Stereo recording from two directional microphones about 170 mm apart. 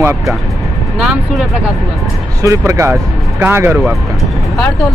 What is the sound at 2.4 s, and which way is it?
Speech, 15° right (ahead or behind).